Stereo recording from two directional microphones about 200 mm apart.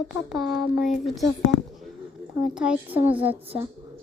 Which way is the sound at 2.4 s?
5° right (ahead or behind).